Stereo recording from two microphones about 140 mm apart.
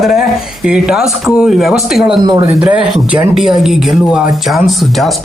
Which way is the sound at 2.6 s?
5° right (ahead or behind).